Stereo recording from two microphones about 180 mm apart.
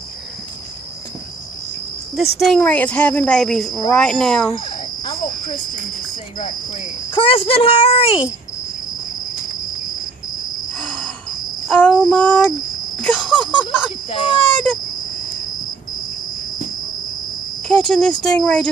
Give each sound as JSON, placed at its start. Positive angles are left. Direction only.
{"t": 2.3, "sound": "a woman's voice", "side_deg": 5}
{"t": 7.2, "sound": "speech", "side_deg": 30}
{"t": 10.8, "sound": "cricket", "side_deg": 5}
{"t": 11.7, "sound": "a woman's voice", "side_deg": 5}
{"t": 14.1, "sound": "speech", "side_deg": 30}
{"t": 17.6, "sound": "a woman's voice", "side_deg": 5}